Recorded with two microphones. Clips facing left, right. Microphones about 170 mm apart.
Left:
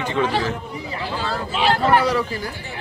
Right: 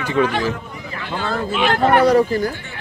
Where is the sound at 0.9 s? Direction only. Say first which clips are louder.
Right 2 dB; 30° left (ahead or behind).